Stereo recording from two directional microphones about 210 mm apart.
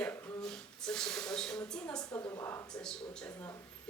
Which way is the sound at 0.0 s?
10° left (ahead or behind).